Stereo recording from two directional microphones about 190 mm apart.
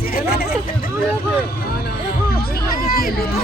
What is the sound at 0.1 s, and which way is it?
Hubbub, 55° left (ahead or behind).